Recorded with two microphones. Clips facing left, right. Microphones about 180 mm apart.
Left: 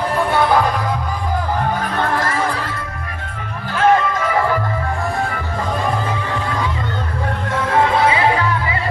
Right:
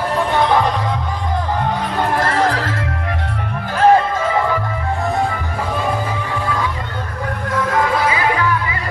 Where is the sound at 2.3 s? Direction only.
90° right.